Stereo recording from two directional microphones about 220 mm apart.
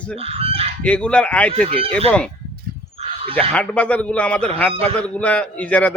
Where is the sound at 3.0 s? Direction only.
25° right (ahead or behind).